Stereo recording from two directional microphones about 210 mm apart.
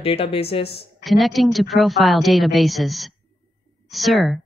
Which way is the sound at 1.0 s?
Centre (ahead or behind).